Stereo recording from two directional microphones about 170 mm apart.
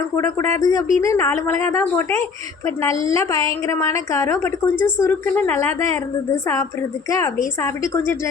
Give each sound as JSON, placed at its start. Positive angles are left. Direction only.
{"t": 0.2, "sound": "a woman's voice", "side_deg": 15}